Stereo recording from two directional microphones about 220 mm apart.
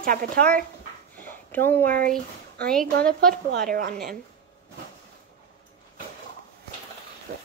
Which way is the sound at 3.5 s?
40° right (ahead or behind).